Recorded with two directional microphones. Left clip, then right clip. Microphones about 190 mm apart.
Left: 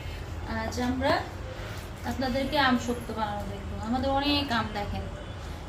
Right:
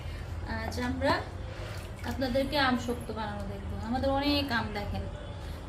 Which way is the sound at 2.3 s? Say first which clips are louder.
Left 2 dB; 10° right (ahead or behind).